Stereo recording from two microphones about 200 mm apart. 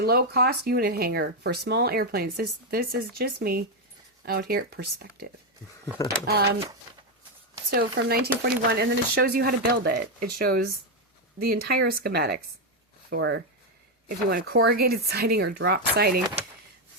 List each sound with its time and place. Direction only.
0.0 s speech: 50° right (ahead or behind)
7.7 s speech: 50° right (ahead or behind)
14.1 s speech: 45° right (ahead or behind)